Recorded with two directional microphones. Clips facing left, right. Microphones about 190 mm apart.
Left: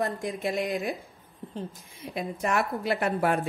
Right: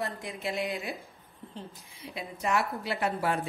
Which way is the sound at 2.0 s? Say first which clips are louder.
Left 7 dB; 50° left (ahead or behind).